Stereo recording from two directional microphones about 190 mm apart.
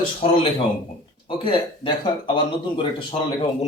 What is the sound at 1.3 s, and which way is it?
Speech, 25° left (ahead or behind).